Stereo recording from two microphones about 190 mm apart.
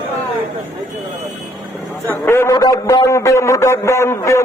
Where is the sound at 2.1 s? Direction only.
15° left (ahead or behind).